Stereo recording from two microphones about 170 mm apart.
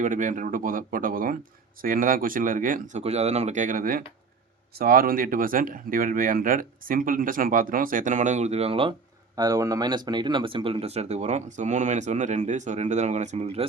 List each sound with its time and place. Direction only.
0.0 s speech: 50° right (ahead or behind)